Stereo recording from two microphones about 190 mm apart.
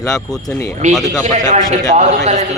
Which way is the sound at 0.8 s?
40° right (ahead or behind).